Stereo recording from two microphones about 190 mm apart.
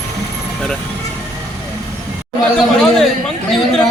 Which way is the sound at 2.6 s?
Centre (ahead or behind).